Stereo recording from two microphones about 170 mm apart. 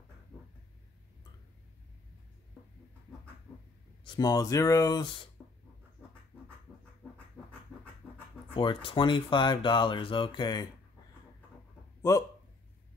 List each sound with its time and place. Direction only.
3.5 s a sound: 10° left (ahead or behind)
4.0 s speech: 25° left (ahead or behind)
8.5 s speech: 30° left (ahead or behind)
12.1 s speech: 20° left (ahead or behind)